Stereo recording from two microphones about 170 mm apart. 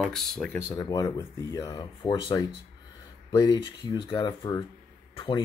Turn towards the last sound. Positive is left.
turn(degrees=25)  # may be behind; listen again after turning